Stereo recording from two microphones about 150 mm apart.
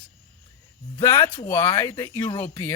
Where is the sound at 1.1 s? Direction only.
35° left (ahead or behind).